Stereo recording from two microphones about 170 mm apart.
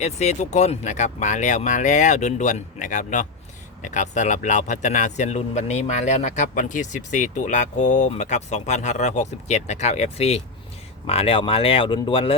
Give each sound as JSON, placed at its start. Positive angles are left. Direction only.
{"t": 0.0, "sound": "speech", "side_deg": 40}